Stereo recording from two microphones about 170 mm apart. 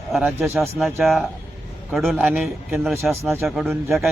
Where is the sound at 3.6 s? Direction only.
10° right (ahead or behind).